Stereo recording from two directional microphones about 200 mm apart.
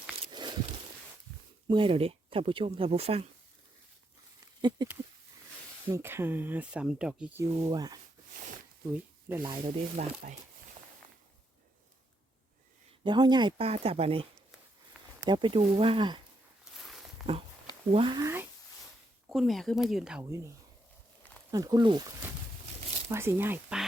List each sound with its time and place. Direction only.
0.3 s walk: 20° right (ahead or behind)
1.6 s speech: 25° right (ahead or behind)
4.8 s a sound: 20° right (ahead or behind)
5.9 s speech: 10° right (ahead or behind)
7.6 s speech: 20° right (ahead or behind)
8.3 s a sound: 40° right (ahead or behind)
8.9 s speech: 10° right (ahead or behind)
9.6 s speech: 35° right (ahead or behind)
13.1 s speech: 20° right (ahead or behind)
16.7 s a sound: centre (ahead or behind)
17.9 s speech: 25° right (ahead or behind)
19.3 s speech: centre (ahead or behind)
21.5 s speech: 20° right (ahead or behind)